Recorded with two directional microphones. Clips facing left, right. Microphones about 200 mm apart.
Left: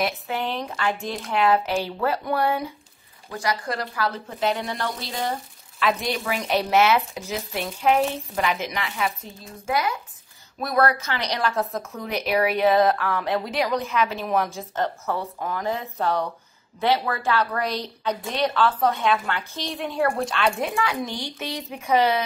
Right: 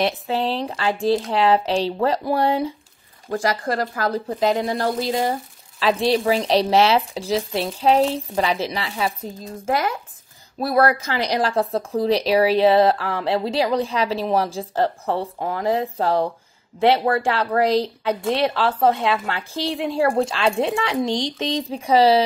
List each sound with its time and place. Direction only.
0.0 s speech: 30° right (ahead or behind)
3.3 s speech: 50° right (ahead or behind); by 9.5 s 35° right (ahead or behind)
10.6 s a woman's voice: 30° right (ahead or behind)
21.1 s a sound: 90° right
21.5 s speech: 30° right (ahead or behind)